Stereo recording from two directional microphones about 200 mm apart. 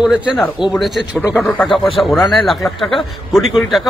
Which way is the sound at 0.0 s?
Centre (ahead or behind).